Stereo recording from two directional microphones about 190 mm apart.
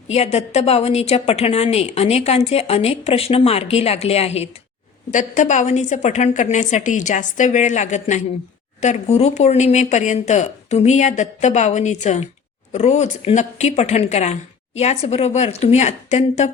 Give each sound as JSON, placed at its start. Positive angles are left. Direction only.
{"t": 0.1, "sound": "a woman's voice", "side_deg": 35}